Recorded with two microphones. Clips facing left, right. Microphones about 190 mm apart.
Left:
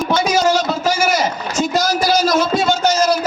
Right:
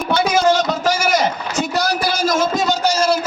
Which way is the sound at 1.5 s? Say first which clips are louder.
Left 2 dB; 60° right (ahead or behind).